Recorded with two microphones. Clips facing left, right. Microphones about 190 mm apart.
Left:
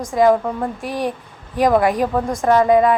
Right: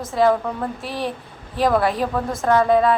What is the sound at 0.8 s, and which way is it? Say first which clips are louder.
Speech: left 4 dB; 50° left (ahead or behind).